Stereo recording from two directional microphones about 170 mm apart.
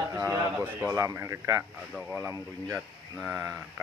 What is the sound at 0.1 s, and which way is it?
Speech, 20° right (ahead or behind).